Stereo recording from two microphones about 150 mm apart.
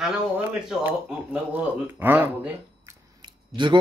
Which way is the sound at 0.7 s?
5° right (ahead or behind).